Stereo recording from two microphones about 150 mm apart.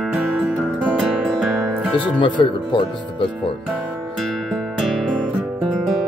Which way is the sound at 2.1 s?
30° left (ahead or behind).